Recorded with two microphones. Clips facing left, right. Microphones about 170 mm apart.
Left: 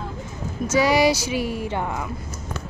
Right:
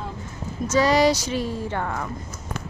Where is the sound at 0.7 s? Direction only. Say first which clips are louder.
Even; 10° left (ahead or behind).